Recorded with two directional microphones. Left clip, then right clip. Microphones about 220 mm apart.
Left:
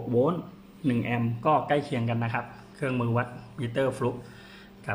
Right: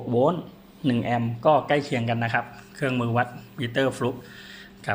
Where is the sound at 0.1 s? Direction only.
10° right (ahead or behind).